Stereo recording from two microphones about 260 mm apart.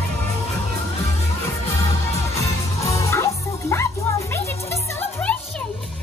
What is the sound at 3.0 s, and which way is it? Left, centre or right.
Music, centre.